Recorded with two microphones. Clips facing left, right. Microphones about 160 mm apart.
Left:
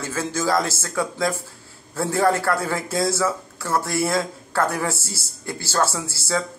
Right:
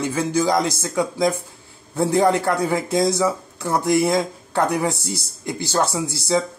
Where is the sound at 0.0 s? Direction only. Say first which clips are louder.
Right 5 dB; 15° right (ahead or behind).